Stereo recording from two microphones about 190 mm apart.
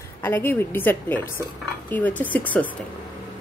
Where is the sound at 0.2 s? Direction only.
10° left (ahead or behind).